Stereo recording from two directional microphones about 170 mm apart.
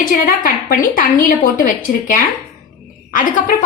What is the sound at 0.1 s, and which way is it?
A woman's voice, 55° left (ahead or behind).